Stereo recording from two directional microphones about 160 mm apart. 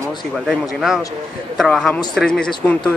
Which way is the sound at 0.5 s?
Centre (ahead or behind).